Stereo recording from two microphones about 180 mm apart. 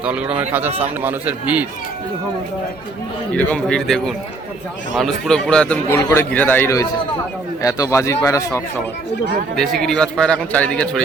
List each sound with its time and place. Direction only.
0.0 s a man's voice: 5° right (ahead or behind)
3.3 s a man's voice: 5° left (ahead or behind)
9.8 s a man's voice: 5° left (ahead or behind)